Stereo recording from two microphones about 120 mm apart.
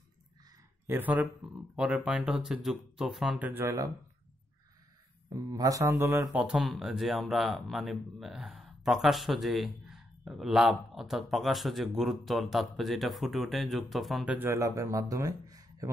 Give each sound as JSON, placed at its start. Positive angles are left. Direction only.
{"t": 0.8, "sound": "speech", "side_deg": -15}
{"t": 3.6, "sound": "speech", "side_deg": -25}
{"t": 5.5, "sound": "speech", "side_deg": -30}
{"t": 6.3, "sound": "speech", "side_deg": -5}
{"t": 14.2, "sound": "speech", "side_deg": -15}